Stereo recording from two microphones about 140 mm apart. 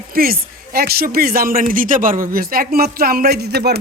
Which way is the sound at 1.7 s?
75° right (ahead or behind).